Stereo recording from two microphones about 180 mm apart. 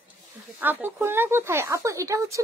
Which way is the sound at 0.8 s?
10° right (ahead or behind).